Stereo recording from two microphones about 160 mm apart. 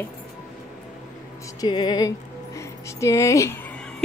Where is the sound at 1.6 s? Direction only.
25° left (ahead or behind).